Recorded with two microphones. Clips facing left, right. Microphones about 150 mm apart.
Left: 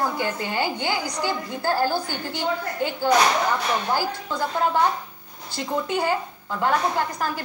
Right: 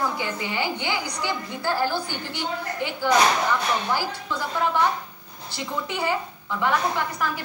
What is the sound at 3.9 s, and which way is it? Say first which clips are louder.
A woman's voice: left 3 dB; 45° left (ahead or behind).